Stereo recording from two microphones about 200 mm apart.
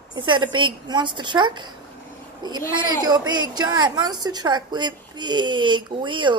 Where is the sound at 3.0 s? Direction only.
20° right (ahead or behind).